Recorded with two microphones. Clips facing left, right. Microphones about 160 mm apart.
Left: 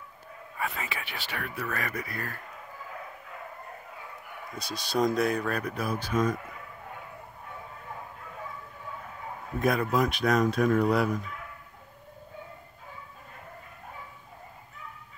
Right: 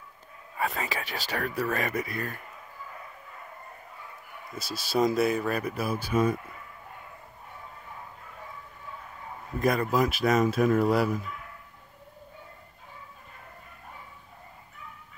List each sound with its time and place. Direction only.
0.6 s speech: 35° right (ahead or behind)
1.7 s speech: 20° right (ahead or behind)
4.6 s speech: 5° right (ahead or behind)
9.6 s speech: centre (ahead or behind)